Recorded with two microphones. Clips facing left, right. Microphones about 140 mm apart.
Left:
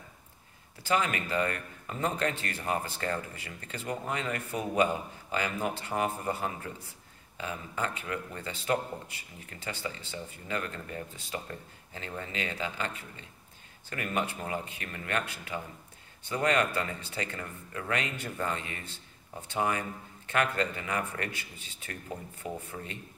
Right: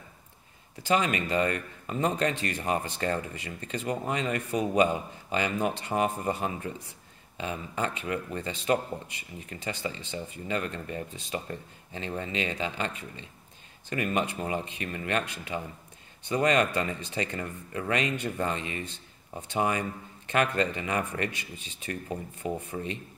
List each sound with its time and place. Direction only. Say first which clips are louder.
0.8 s a man's voice: right 3 dB; 20° right (ahead or behind)
22.4 s a man's voice: right 7 dB; 20° right (ahead or behind)